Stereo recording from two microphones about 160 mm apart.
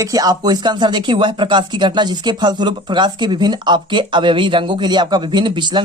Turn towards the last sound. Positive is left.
turn(degrees=-30)  # may be behind; listen again after turning